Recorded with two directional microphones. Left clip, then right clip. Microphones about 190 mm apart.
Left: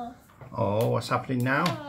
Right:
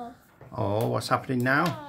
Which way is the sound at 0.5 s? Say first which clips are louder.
Left 2 dB; 50° right (ahead or behind).